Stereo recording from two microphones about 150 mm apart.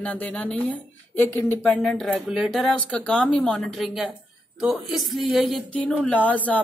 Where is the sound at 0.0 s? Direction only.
10° left (ahead or behind).